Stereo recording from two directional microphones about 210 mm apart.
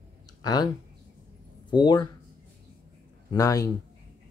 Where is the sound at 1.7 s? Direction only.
20° left (ahead or behind).